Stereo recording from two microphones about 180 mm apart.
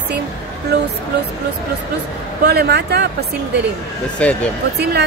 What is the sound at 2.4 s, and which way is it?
Speech, 65° right (ahead or behind).